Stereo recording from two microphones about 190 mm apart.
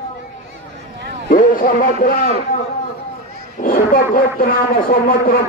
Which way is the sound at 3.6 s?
50° left (ahead or behind).